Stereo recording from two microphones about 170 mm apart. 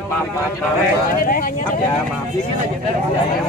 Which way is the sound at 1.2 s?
55° left (ahead or behind).